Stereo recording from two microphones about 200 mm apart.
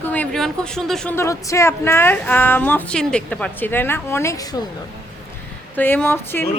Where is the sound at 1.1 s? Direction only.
15° left (ahead or behind).